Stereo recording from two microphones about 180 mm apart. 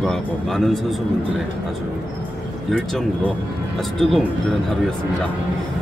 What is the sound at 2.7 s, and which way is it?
Speech, centre (ahead or behind).